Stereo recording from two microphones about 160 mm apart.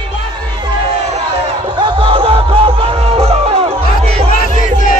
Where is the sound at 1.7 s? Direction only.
30° right (ahead or behind).